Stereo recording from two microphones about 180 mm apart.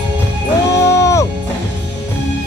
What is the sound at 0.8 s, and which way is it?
Music, 15° left (ahead or behind).